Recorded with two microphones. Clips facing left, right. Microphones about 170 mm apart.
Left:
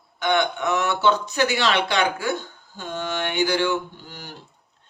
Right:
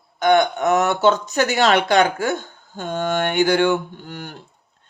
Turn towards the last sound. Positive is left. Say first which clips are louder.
# right 6 dB
turn(degrees=-55)  # may be behind; listen again after turning